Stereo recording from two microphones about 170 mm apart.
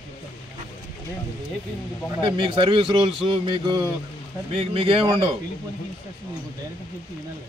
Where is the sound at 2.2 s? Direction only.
30° right (ahead or behind).